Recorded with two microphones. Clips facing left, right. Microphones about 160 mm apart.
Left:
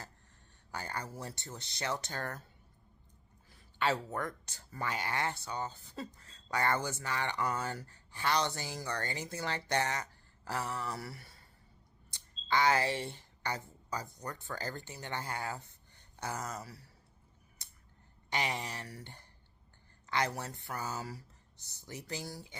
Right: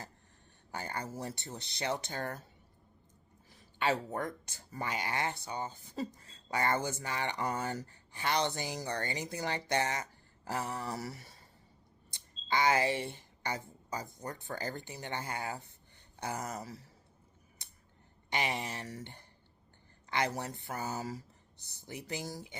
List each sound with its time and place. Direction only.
0.7 s speech: 20° right (ahead or behind)
3.6 s a sound: 15° right (ahead or behind)
4.1 s speech: 20° right (ahead or behind)
12.5 s speech: 15° right (ahead or behind)
18.3 s speech: 15° right (ahead or behind)